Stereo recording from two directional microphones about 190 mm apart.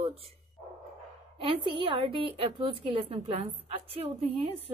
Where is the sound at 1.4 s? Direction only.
30° right (ahead or behind).